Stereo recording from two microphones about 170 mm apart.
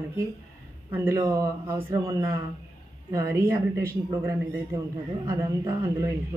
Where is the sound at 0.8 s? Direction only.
20° right (ahead or behind).